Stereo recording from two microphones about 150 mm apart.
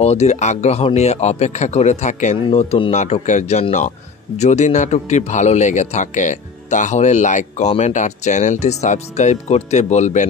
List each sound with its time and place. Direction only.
0.0 s a man's voice: 45° left (ahead or behind)